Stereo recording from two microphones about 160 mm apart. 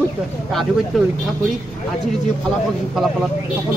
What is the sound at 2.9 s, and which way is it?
Speech, 5° right (ahead or behind).